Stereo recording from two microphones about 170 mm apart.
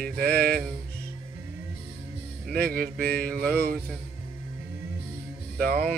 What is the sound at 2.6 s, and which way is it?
Mantra, 65° right (ahead or behind).